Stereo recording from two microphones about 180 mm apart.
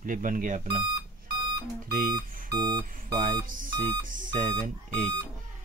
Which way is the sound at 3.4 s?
50° right (ahead or behind).